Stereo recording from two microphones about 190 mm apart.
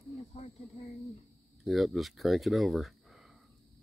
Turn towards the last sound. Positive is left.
turn(degrees=0)  # may be behind; listen again after turning